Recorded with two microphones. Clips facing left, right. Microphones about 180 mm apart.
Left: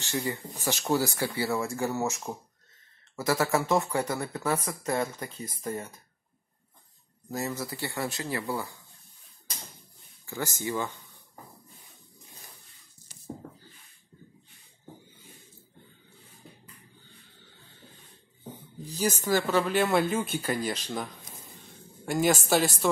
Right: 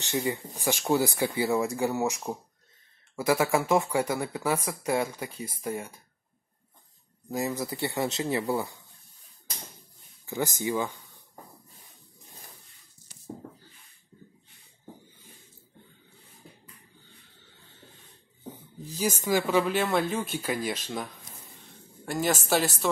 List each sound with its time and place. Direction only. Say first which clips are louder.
0.0 s speech: right 2 dB; 15° right (ahead or behind)
7.2 s speech: right 3 dB; 15° right (ahead or behind)
10.2 s speech: right 3 dB; 15° right (ahead or behind)
19.2 s speech: right 2 dB; 10° right (ahead or behind)